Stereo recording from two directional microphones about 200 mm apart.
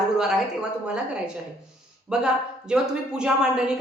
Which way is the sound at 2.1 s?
5° right (ahead or behind).